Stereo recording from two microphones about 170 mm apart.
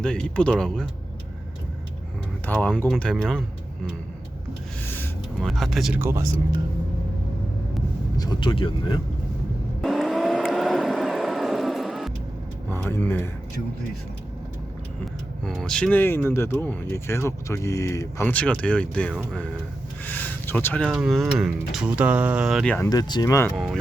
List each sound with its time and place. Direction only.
0.0 s speech: 5° left (ahead or behind)
2.5 s speech: 5° left (ahead or behind)
5.4 s speech: centre (ahead or behind)
6.0 s speech: 15° right (ahead or behind)
8.1 s speech: 25° left (ahead or behind)
9.8 s vehicle: centre (ahead or behind)
12.7 s speech: 15° left (ahead or behind)
15.4 s speech: 5° left (ahead or behind)
20.9 s speech: 5° right (ahead or behind)
22.9 s speech: 25° left (ahead or behind)